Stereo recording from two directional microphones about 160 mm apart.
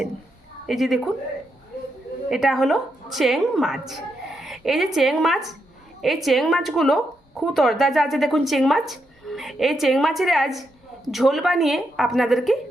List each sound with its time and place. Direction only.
0.7 s speech: centre (ahead or behind)
2.3 s speech: centre (ahead or behind)